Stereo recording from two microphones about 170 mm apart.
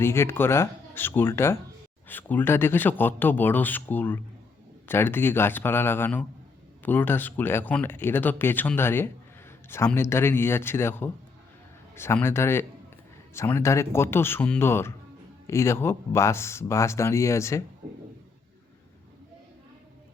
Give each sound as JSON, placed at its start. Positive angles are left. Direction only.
{"t": 0.0, "sound": "speech", "side_deg": 15}